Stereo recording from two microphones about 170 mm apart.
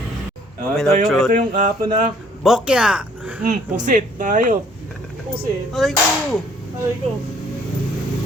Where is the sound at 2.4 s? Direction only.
5° right (ahead or behind).